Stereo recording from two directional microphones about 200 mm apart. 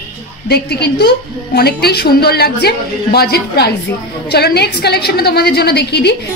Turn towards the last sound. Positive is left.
turn(degrees=55)  # may be behind; listen again after turning